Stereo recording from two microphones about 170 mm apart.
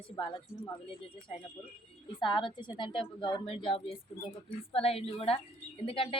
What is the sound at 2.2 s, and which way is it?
A woman's voice, 30° left (ahead or behind).